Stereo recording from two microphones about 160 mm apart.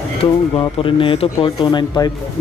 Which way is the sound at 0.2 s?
35° left (ahead or behind).